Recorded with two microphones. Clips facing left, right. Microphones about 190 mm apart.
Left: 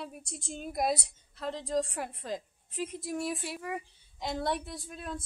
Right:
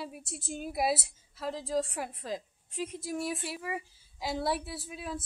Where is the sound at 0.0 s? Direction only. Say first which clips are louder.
Right 1 dB; 5° right (ahead or behind).